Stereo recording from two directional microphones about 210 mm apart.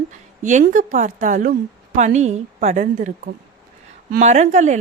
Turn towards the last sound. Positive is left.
turn(degrees=-35)  # may be behind; listen again after turning